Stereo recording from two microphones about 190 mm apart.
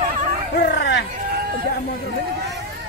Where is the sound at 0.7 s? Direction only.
65° left (ahead or behind).